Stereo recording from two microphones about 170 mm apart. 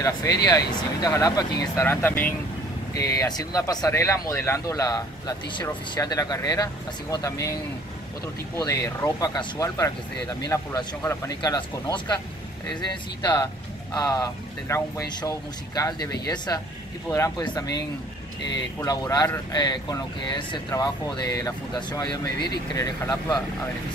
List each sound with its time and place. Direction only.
0.0 s speech: 20° left (ahead or behind)
8.5 s speech: 20° left (ahead or behind)
13.2 s speech: 20° left (ahead or behind)